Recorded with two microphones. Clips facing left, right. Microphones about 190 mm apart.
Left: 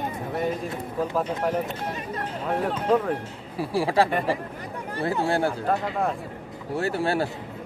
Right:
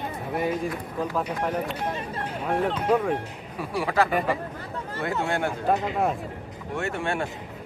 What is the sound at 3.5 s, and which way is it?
Speech, 30° left (ahead or behind).